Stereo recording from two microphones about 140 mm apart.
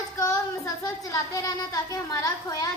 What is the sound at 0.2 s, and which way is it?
Child singing, 25° left (ahead or behind).